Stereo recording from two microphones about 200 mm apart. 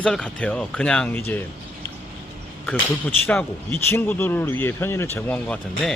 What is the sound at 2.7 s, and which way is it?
Speech, 5° left (ahead or behind).